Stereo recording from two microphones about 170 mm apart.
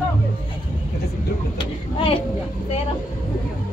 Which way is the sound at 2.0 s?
35° left (ahead or behind).